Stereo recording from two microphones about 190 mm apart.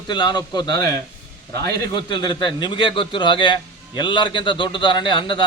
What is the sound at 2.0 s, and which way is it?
A man's voice, 25° left (ahead or behind).